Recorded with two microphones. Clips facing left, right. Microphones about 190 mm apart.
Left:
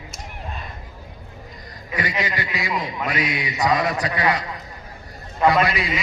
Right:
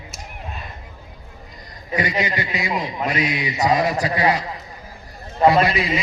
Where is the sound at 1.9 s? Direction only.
20° right (ahead or behind).